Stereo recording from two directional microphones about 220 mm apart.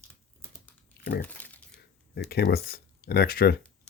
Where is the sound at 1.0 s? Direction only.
45° left (ahead or behind).